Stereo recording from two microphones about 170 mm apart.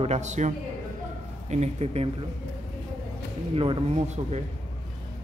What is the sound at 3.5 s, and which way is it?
Speech, 30° right (ahead or behind).